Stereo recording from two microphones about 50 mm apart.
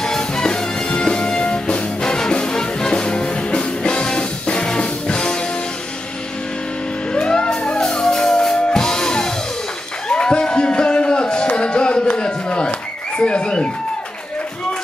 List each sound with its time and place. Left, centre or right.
0.0 s music: centre
7.2 s music: centre
7.8 s music: centre
13.2 s a sound: centre